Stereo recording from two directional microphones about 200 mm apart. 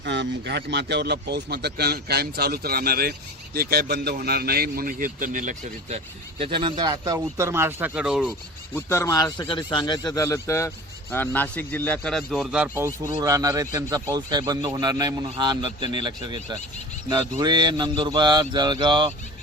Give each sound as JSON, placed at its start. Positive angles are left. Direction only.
{"t": 0.0, "sound": "speech", "side_deg": -60}
{"t": 6.4, "sound": "speech", "side_deg": -25}
{"t": 8.7, "sound": "a man's voice", "side_deg": 15}